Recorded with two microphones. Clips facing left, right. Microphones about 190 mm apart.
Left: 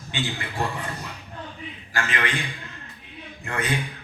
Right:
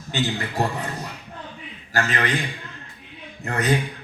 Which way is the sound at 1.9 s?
40° right (ahead or behind).